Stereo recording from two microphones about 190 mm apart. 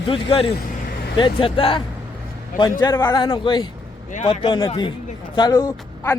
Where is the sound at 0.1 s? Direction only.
30° left (ahead or behind).